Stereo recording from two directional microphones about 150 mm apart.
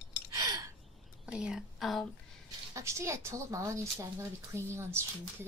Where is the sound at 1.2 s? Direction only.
5° right (ahead or behind).